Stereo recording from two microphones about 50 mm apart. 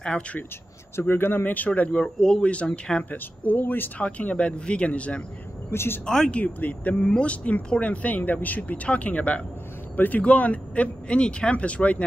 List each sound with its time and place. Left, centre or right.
0.9 s speech: left
3.1 s speech: left
4.0 s speech: left
5.7 s speech: left
6.0 s speech: centre
6.4 s speech: left